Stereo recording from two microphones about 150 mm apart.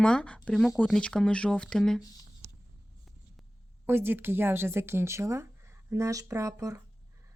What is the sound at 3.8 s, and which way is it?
Speech, 15° right (ahead or behind).